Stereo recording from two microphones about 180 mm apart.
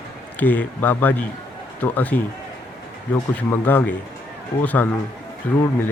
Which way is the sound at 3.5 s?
10° left (ahead or behind).